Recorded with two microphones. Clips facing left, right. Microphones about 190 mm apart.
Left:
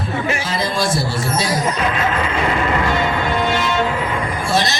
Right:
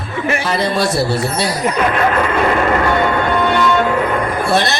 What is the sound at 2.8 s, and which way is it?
Music, 60° right (ahead or behind).